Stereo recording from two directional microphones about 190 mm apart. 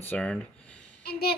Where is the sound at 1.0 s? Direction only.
55° left (ahead or behind).